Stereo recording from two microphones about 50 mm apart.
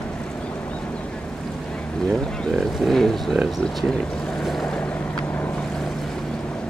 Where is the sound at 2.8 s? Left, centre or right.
Centre.